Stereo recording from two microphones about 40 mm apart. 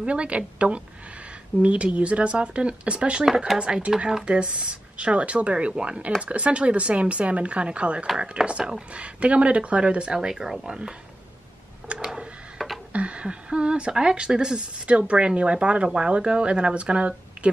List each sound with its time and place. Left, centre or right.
0.0 s speech: right
8.4 s speech: centre
8.9 s speech: right
10.1 s speech: centre
11.9 s a sound: right
12.5 s a sound: centre
12.9 s speech: right